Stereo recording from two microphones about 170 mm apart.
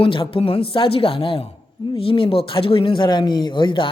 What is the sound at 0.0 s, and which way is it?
A woman's voice, 30° left (ahead or behind).